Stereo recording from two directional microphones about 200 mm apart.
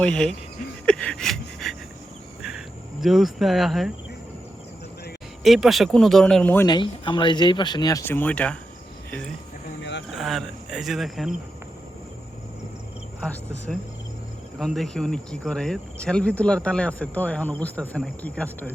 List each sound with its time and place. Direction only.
0.0 s speech: 5° left (ahead or behind)
0.9 s a sound: 5° left (ahead or behind)
5.4 s speech: centre (ahead or behind)
6.7 s speech: 25° left (ahead or behind); by 11.3 s centre (ahead or behind)
14.6 s speech: centre (ahead or behind)